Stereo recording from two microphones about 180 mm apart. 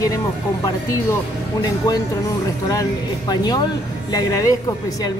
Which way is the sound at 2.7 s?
20° left (ahead or behind).